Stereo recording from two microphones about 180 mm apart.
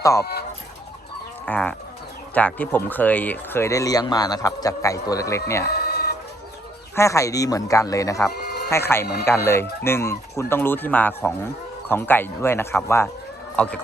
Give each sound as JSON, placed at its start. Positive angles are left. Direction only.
{"t": 0.0, "sound": "speech", "side_deg": 15}
{"t": 1.5, "sound": "speech", "side_deg": 5}
{"t": 5.6, "sound": "chicken", "side_deg": 60}
{"t": 6.9, "sound": "speech", "side_deg": 15}
{"t": 8.4, "sound": "sheep", "side_deg": 65}
{"t": 8.7, "sound": "speech", "side_deg": 15}